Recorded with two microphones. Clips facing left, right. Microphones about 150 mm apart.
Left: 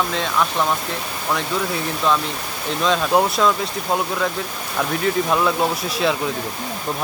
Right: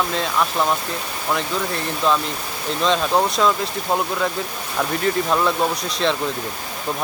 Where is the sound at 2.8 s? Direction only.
Centre (ahead or behind).